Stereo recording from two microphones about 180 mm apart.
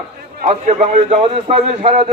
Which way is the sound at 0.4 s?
40° right (ahead or behind).